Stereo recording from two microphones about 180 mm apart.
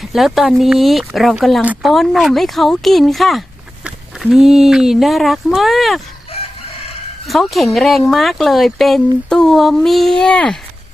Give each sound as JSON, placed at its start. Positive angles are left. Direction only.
{"t": 0.0, "sound": "speech", "side_deg": 0}
{"t": 6.3, "sound": "chicken", "side_deg": 35}
{"t": 7.3, "sound": "speech", "side_deg": 0}